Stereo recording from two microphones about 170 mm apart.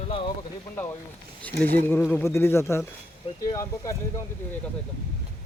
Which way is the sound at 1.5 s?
65° right (ahead or behind).